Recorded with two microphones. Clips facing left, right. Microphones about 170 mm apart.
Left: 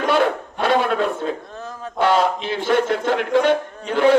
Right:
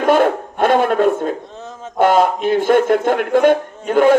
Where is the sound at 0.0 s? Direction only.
50° right (ahead or behind).